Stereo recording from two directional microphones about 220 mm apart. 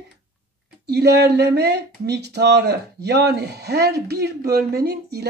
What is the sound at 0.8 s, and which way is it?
A woman's voice, 50° right (ahead or behind).